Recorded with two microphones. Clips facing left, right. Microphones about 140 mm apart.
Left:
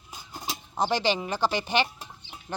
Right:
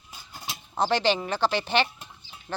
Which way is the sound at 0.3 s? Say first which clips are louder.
Left 3 dB; 40° left (ahead or behind).